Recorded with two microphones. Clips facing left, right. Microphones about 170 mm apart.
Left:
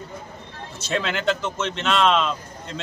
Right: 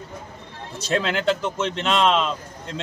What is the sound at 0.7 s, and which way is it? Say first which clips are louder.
A man's voice: right 2 dB; 35° right (ahead or behind).